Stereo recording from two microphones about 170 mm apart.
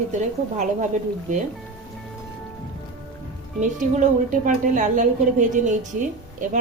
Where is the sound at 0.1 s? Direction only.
45° right (ahead or behind).